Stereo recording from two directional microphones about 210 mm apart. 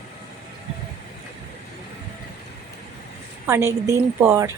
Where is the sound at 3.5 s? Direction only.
15° right (ahead or behind).